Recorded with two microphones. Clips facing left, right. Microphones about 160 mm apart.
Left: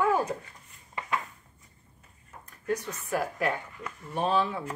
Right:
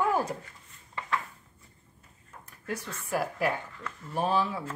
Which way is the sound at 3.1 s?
10° right (ahead or behind).